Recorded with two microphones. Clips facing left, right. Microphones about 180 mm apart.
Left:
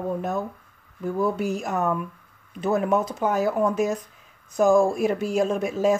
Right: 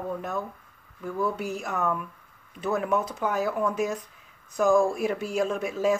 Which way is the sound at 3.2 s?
45° left (ahead or behind).